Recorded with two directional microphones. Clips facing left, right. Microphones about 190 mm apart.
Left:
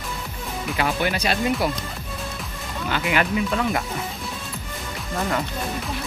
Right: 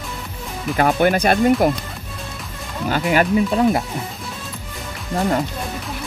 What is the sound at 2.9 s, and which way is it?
Speech, 40° right (ahead or behind).